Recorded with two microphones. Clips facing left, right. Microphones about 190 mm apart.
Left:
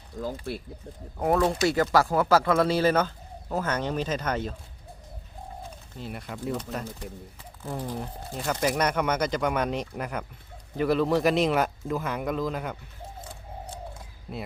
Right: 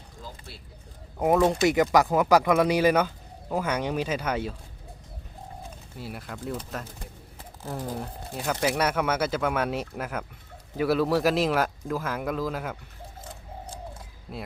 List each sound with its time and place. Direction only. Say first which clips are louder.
0.2 s speech: left 12 dB; 60° left (ahead or behind)
1.2 s speech: right 2 dB; 20° right (ahead or behind)
6.0 s speech: left 1 dB; 5° right (ahead or behind)
14.3 s speech: left 1 dB; 5° left (ahead or behind)